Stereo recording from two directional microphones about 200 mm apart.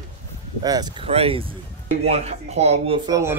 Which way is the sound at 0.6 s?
20° right (ahead or behind).